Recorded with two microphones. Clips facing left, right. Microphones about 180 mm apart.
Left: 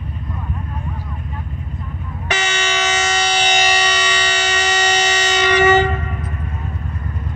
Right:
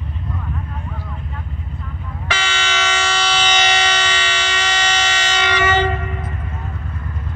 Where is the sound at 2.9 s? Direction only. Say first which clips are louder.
Left 1 dB; 40° left (ahead or behind).